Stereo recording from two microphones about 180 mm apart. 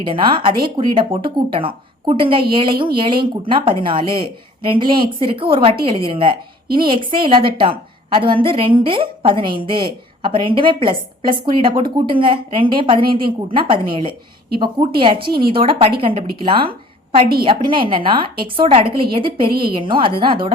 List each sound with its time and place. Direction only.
0.0 s a woman's voice: 25° right (ahead or behind)